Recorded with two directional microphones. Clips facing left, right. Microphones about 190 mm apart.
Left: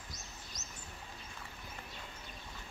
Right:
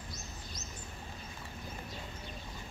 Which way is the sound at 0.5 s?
40° left (ahead or behind).